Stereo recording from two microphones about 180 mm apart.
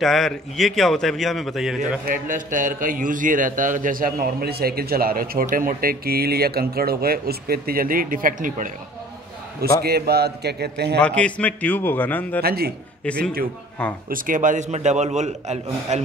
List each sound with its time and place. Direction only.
0.0 s a man's voice: centre (ahead or behind)
2.2 s a man's voice: 45° right (ahead or behind)
9.8 s speech: 60° right (ahead or behind)
11.0 s a man's voice: 5° left (ahead or behind)
12.4 s speech: 60° right (ahead or behind)
13.0 s a man's voice: 5° left (ahead or behind)
14.0 s a man's voice: 50° right (ahead or behind)